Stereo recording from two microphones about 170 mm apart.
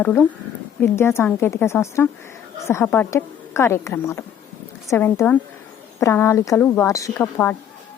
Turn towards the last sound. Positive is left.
turn(degrees=10)  # may be behind; listen again after turning